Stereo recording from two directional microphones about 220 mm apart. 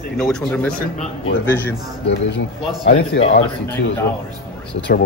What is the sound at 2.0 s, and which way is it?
A man's voice, 50° left (ahead or behind).